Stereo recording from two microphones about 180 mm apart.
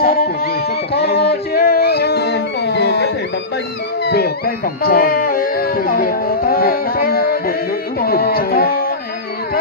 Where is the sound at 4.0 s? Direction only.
60° left (ahead or behind).